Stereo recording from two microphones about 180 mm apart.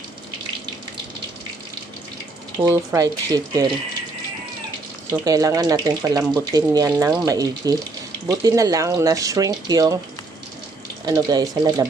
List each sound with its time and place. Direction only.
2.6 s speech: 15° right (ahead or behind)
5.2 s speech: 20° right (ahead or behind)
11.1 s speech: 20° right (ahead or behind)